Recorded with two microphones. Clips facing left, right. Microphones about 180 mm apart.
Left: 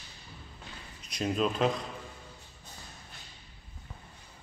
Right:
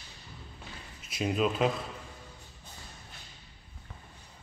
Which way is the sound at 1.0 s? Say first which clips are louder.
Right 1 dB; 5° right (ahead or behind).